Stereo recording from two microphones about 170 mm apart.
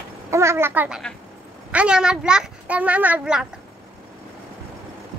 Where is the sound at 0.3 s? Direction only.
15° right (ahead or behind).